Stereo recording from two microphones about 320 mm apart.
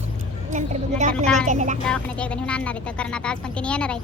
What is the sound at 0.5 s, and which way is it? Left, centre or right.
A woman's voice, right.